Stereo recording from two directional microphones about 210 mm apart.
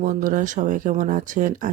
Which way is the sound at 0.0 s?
40° right (ahead or behind).